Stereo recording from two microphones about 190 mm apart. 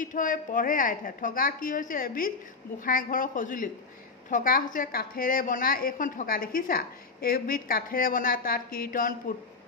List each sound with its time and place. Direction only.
0.0 s a woman's voice: 45° left (ahead or behind)